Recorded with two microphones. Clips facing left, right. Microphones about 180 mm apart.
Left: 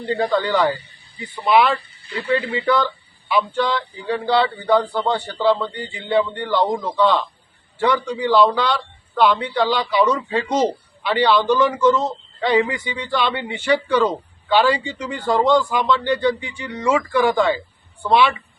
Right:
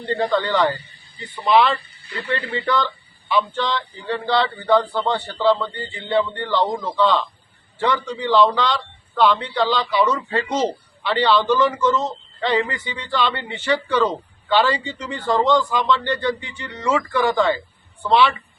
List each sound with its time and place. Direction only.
0.0 s speech: 10° left (ahead or behind)